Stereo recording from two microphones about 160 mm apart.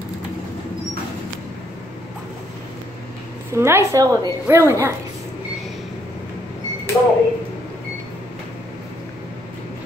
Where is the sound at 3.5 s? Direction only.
15° right (ahead or behind).